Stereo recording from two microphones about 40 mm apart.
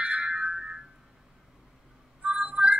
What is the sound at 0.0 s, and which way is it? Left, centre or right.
Music, right.